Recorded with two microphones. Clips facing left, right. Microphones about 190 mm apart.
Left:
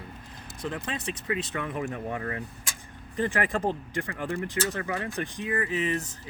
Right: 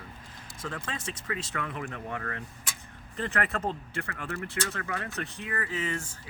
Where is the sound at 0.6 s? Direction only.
15° left (ahead or behind).